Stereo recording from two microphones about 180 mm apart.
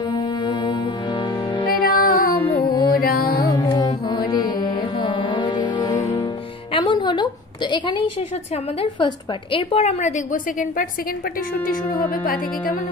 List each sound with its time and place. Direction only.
0.1 s music: 25° left (ahead or behind)
1.7 s music: 55° left (ahead or behind)
2.4 s music: 15° left (ahead or behind)
6.7 s a sound: 25° left (ahead or behind)
8.7 s a woman's voice: 30° left (ahead or behind); by 12.2 s 55° left (ahead or behind)